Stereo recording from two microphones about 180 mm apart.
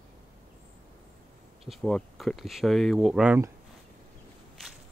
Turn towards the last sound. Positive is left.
turn(degrees=-10)  # may be behind; listen again after turning